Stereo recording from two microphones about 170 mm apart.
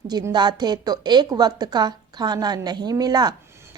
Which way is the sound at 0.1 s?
20° right (ahead or behind).